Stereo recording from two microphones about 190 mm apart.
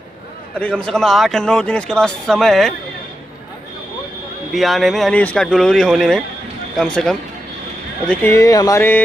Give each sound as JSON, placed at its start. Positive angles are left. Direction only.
{"t": 0.6, "sound": "speech", "side_deg": 5}
{"t": 4.5, "sound": "speech", "side_deg": 0}